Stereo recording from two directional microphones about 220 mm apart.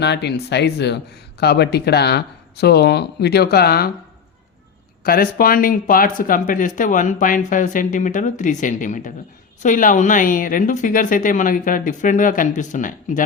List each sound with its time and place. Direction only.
0.0 s speech: 50° left (ahead or behind)
5.0 s speech: 40° left (ahead or behind)